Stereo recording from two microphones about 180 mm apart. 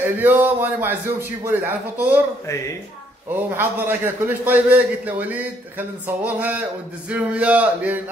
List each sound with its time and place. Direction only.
0.0 s a man's voice: 10° right (ahead or behind)
3.3 s a man's voice: 10° right (ahead or behind)